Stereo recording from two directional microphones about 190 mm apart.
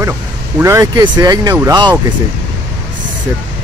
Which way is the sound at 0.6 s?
15° right (ahead or behind).